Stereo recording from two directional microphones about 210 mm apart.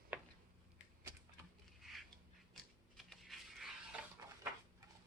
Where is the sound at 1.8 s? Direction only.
Centre (ahead or behind).